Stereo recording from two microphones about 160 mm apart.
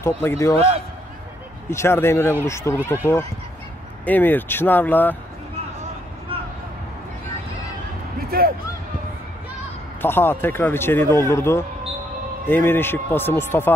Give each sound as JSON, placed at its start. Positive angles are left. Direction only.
{"t": 0.0, "sound": "speech", "side_deg": 15}
{"t": 1.7, "sound": "speech", "side_deg": 15}
{"t": 4.0, "sound": "speech", "side_deg": 10}
{"t": 8.3, "sound": "speech", "side_deg": -70}
{"t": 10.0, "sound": "speech", "side_deg": 15}